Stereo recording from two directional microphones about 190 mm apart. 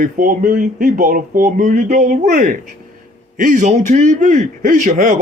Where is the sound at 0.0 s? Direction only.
45° right (ahead or behind).